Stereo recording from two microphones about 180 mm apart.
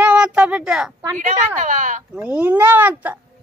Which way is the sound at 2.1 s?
10° right (ahead or behind).